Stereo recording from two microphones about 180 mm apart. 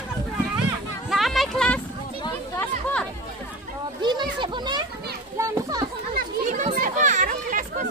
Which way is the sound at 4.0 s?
25° right (ahead or behind).